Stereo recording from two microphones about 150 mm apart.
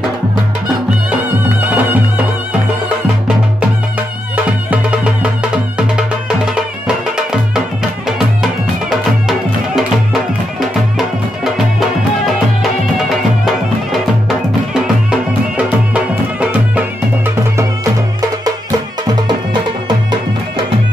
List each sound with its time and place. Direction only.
1.7 s music: 10° right (ahead or behind)
4.6 s music: 10° right (ahead or behind)
10.6 s music: centre (ahead or behind)
14.7 s music: 5° right (ahead or behind)
19.9 s music: 30° right (ahead or behind)